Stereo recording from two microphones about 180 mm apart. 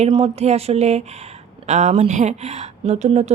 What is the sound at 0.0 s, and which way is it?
Speech, 35° right (ahead or behind).